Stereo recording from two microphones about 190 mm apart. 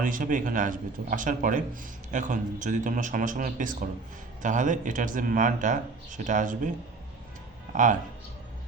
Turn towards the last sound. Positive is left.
turn(degrees=-40)  # may be behind; listen again after turning